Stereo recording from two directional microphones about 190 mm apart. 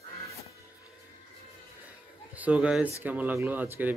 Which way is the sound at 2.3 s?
5° right (ahead or behind).